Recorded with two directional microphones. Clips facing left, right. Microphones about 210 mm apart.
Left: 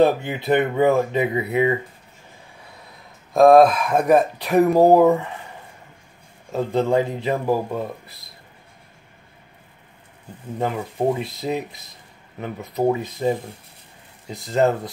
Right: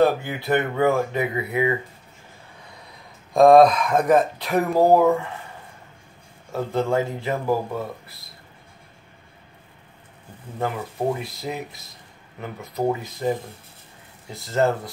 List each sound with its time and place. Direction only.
0.0 s speech: 20° left (ahead or behind)
3.3 s speech: 5° left (ahead or behind)
6.5 s speech: 20° left (ahead or behind)
11.1 s speech: 20° left (ahead or behind)